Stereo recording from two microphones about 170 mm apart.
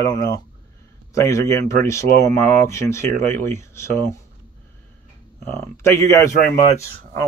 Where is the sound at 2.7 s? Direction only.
15° left (ahead or behind).